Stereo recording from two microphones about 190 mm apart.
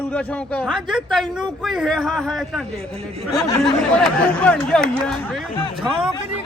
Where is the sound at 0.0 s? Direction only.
5° left (ahead or behind).